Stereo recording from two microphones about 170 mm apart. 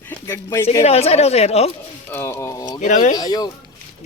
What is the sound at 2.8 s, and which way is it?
Speech, 45° left (ahead or behind).